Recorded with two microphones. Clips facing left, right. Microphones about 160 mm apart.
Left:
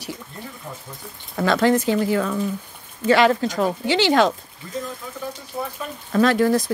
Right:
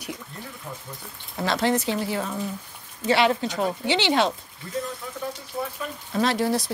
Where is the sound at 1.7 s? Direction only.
50° left (ahead or behind).